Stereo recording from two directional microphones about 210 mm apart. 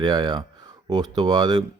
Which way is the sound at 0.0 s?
20° right (ahead or behind).